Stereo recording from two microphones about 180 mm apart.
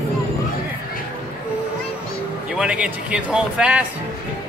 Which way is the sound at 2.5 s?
5° right (ahead or behind).